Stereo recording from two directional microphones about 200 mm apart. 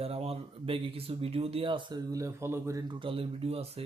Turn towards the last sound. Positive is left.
turn(degrees=-30)  # may be behind; listen again after turning